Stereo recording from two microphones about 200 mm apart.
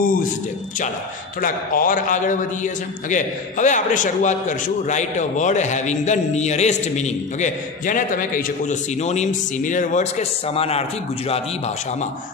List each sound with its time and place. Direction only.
0.0 s a man's voice: 45° left (ahead or behind)
1.4 s a man's voice: 45° left (ahead or behind)